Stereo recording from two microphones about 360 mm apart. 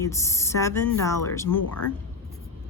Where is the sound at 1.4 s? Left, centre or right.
Left.